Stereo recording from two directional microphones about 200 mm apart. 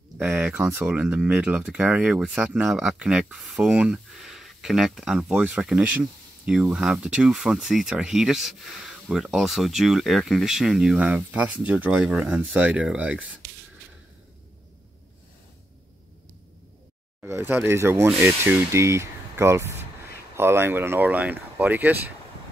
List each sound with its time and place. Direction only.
0.2 s speech: 10° right (ahead or behind)
13.4 s whispering: 55° right (ahead or behind)
17.2 s speech: 10° right (ahead or behind)